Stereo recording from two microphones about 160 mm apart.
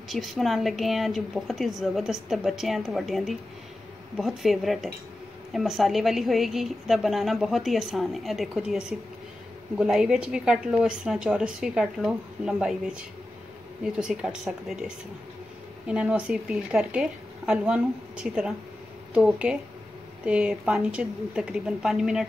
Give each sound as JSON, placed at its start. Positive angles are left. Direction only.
{"t": 0.1, "sound": "a woman's voice", "side_deg": 0}
{"t": 15.9, "sound": "a woman's voice", "side_deg": -5}